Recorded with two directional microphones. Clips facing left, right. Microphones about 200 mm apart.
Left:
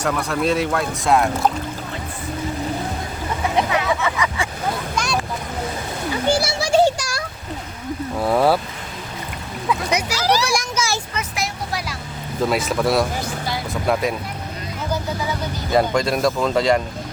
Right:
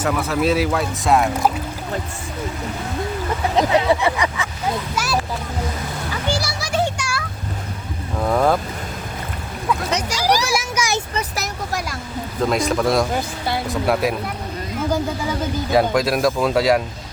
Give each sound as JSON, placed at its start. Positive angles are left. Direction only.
{"t": 0.0, "sound": "speech", "side_deg": -5}
{"t": 3.7, "sound": "speech", "side_deg": -30}
{"t": 4.9, "sound": "speech", "side_deg": -5}
{"t": 6.3, "sound": "music", "side_deg": 25}
{"t": 8.2, "sound": "speech", "side_deg": 5}
{"t": 9.6, "sound": "speech", "side_deg": 5}
{"t": 10.2, "sound": "speech", "side_deg": -15}
{"t": 10.4, "sound": "speech", "side_deg": -5}
{"t": 10.8, "sound": "vehicle", "side_deg": -15}
{"t": 11.1, "sound": "speech", "side_deg": -35}
{"t": 12.5, "sound": "speech", "side_deg": 5}
{"t": 15.7, "sound": "speech", "side_deg": -5}